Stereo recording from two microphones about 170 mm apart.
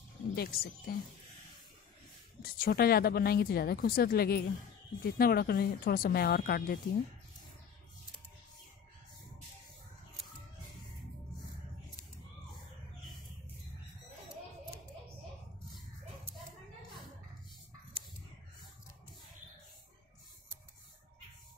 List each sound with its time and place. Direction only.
0.4 s speech: 60° left (ahead or behind)
2.4 s speech: 60° left (ahead or behind)